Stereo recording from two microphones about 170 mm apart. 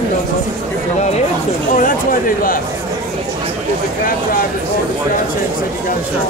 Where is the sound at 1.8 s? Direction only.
55° left (ahead or behind).